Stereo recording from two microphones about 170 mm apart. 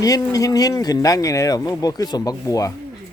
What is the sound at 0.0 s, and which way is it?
Speech, 20° left (ahead or behind).